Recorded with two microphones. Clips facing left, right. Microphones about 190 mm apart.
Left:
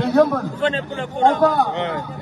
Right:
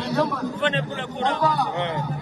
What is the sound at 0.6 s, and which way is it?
A man's voice, 40° left (ahead or behind).